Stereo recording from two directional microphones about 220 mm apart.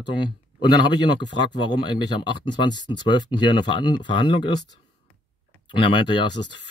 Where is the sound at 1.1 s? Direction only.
20° left (ahead or behind).